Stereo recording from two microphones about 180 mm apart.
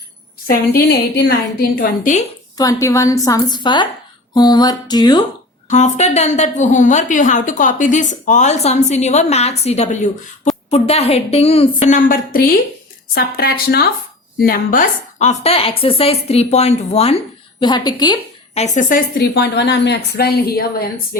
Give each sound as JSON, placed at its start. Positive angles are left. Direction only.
{"t": 0.4, "sound": "a woman's voice", "side_deg": 60}
{"t": 2.6, "sound": "a woman's voice", "side_deg": 20}
{"t": 5.6, "sound": "a woman's voice", "side_deg": 40}
{"t": 17.6, "sound": "a woman's voice", "side_deg": 25}
{"t": 18.5, "sound": "a woman's voice", "side_deg": 40}